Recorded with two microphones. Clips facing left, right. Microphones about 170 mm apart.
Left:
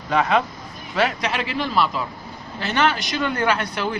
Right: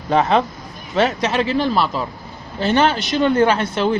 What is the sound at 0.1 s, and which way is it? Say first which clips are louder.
A man's voice: right 4 dB; 30° right (ahead or behind).